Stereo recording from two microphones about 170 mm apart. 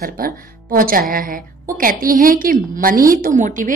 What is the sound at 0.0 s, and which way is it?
A woman's voice, 60° right (ahead or behind).